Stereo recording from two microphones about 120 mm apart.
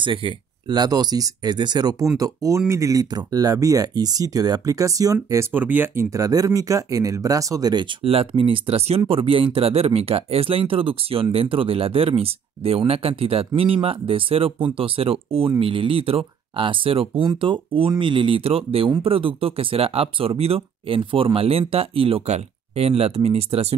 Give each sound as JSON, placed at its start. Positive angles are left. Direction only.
{"t": 0.0, "sound": "speech", "side_deg": -45}
{"t": 5.5, "sound": "speech", "side_deg": -15}
{"t": 8.0, "sound": "speech", "side_deg": -55}